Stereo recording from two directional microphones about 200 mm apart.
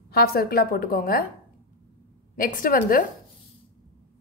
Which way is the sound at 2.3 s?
45° left (ahead or behind).